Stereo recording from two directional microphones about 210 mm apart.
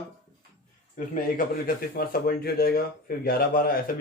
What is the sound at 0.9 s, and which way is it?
A man's voice, 40° left (ahead or behind).